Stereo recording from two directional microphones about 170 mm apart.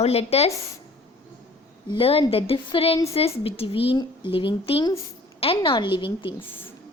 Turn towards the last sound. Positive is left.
turn(degrees=30)  # may be behind; listen again after turning